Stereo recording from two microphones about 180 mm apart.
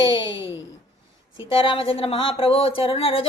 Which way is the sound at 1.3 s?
30° left (ahead or behind).